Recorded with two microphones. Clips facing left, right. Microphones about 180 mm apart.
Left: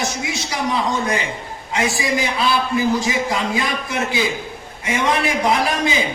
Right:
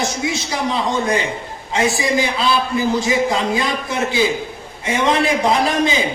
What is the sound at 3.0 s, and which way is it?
A man's voice, 25° right (ahead or behind).